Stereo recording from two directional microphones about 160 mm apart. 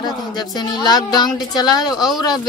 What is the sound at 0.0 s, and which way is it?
Speech, 25° left (ahead or behind).